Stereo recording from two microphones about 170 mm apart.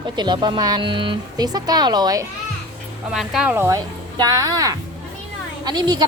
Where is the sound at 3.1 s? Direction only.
Centre (ahead or behind).